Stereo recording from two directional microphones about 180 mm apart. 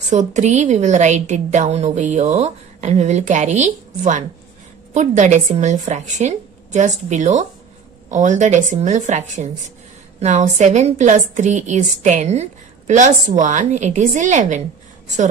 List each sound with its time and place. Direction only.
0.1 s a woman's voice: 40° right (ahead or behind)